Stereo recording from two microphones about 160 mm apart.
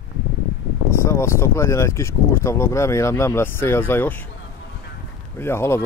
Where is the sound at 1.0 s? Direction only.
15° left (ahead or behind).